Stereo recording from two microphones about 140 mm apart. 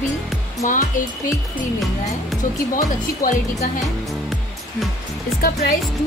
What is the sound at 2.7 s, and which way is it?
Speech, 75° left (ahead or behind).